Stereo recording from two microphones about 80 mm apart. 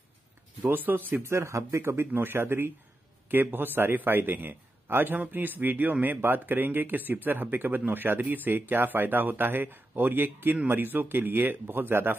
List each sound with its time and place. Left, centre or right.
0.6 s speech: right
1.3 s speech: right